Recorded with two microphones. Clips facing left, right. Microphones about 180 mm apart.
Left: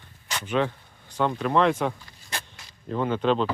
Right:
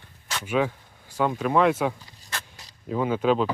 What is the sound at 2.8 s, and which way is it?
Speech, 5° right (ahead or behind).